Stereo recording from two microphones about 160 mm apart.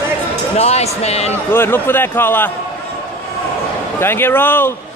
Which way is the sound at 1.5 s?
15° left (ahead or behind).